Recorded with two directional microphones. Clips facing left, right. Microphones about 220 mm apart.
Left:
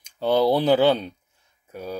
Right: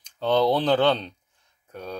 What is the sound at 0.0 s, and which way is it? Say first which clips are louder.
Speech: left 1 dB; 10° left (ahead or behind).